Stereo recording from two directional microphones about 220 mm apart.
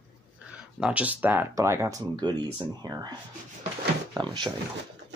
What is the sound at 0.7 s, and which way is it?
Speech, 5° right (ahead or behind).